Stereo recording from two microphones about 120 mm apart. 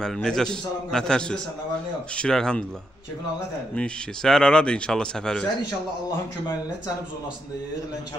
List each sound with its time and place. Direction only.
0.0 s a man's voice: 5° left (ahead or behind)
3.7 s speech: 5° left (ahead or behind)